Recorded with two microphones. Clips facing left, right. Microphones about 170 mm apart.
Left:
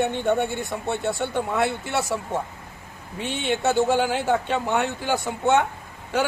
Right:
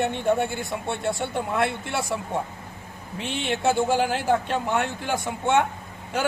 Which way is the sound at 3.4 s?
Centre (ahead or behind).